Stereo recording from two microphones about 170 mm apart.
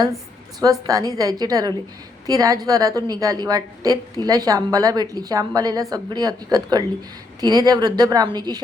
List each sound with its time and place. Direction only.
0.6 s a woman's voice: 20° right (ahead or behind)